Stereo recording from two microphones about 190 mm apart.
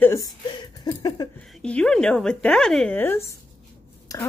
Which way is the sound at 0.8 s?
20° left (ahead or behind).